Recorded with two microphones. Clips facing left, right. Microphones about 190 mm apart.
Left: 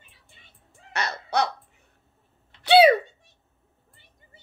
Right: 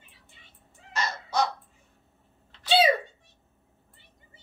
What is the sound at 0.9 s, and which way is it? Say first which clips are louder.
Crow: left 2 dB; 65° left (ahead or behind).